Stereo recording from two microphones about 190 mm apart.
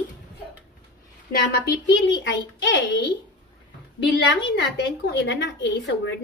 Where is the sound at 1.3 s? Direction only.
60° left (ahead or behind).